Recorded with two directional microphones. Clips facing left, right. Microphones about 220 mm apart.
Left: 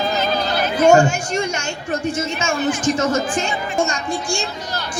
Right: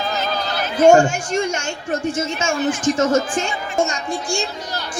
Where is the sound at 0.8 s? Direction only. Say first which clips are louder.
Right 1 dB; 50° right (ahead or behind).